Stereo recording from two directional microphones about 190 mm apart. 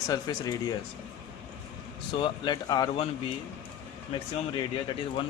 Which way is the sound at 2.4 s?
20° left (ahead or behind).